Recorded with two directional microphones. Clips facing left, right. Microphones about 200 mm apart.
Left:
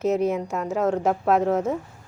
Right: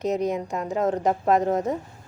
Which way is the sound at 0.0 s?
5° left (ahead or behind).